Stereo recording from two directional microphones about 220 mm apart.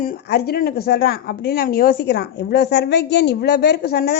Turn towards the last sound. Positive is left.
turn(degrees=50)  # may be behind; listen again after turning